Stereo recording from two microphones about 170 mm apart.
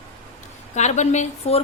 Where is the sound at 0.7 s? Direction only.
40° left (ahead or behind).